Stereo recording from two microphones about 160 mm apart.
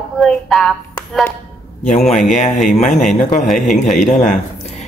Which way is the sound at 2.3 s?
50° left (ahead or behind).